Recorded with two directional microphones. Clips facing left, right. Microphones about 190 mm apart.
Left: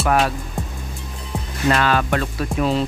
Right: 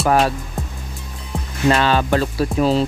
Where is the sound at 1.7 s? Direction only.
30° right (ahead or behind).